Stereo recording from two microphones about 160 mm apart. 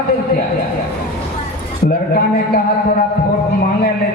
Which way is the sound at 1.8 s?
65° left (ahead or behind).